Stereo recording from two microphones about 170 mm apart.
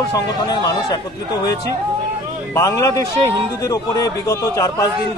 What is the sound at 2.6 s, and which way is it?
A man's voice, 20° left (ahead or behind).